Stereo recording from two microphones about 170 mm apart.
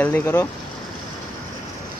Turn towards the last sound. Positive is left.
turn(degrees=20)  # may be behind; listen again after turning